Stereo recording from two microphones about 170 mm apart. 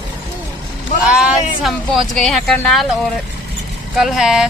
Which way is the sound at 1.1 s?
Centre (ahead or behind).